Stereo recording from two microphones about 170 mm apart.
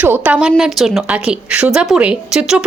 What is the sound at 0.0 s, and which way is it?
A woman's voice, 10° right (ahead or behind).